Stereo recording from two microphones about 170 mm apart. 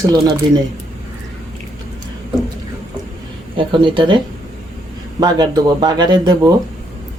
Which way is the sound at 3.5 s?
30° right (ahead or behind).